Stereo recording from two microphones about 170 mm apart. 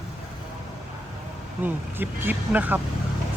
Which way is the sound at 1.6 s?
10° right (ahead or behind).